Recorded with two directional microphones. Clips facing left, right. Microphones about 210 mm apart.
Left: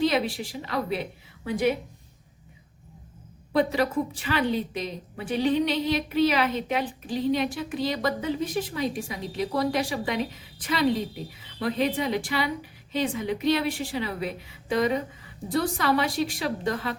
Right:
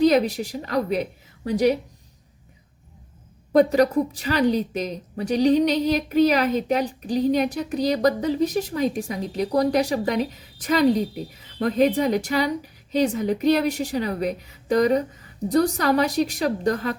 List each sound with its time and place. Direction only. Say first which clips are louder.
0.0 s a woman's voice: right 6 dB; 45° right (ahead or behind)
3.5 s speech: right 7 dB; 45° right (ahead or behind)